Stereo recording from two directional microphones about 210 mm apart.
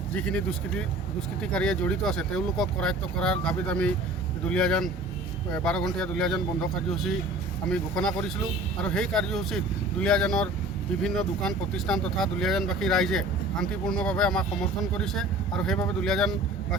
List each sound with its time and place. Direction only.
0.1 s speech: 5° left (ahead or behind)